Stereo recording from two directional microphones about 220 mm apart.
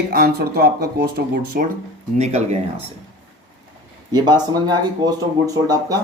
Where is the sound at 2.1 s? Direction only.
30° right (ahead or behind).